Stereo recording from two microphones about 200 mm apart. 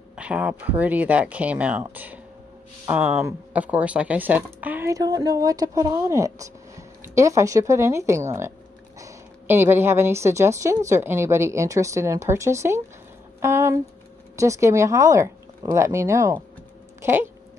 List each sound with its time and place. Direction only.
0.1 s speech: 5° right (ahead or behind)